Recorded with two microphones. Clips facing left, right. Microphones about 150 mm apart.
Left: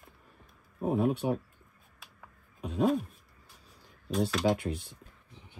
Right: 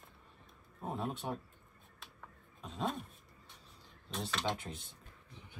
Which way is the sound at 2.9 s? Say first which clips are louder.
Left 13 dB; centre (ahead or behind).